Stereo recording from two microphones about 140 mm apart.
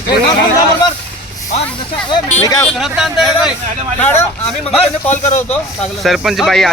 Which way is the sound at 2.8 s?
Centre (ahead or behind).